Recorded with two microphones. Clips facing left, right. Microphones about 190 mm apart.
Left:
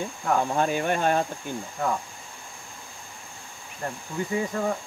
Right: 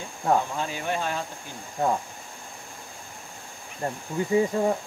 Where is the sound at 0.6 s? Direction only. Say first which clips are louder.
Left 5 dB; 55° left (ahead or behind).